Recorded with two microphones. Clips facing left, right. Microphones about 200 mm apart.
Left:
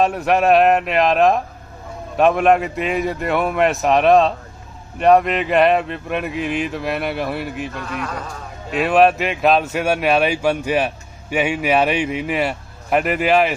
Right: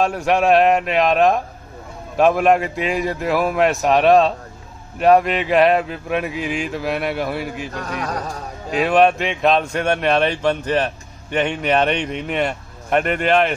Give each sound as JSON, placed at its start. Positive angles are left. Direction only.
{"t": 0.0, "sound": "speech", "side_deg": 0}
{"t": 7.7, "sound": "speech", "side_deg": -40}
{"t": 8.6, "sound": "speech", "side_deg": 0}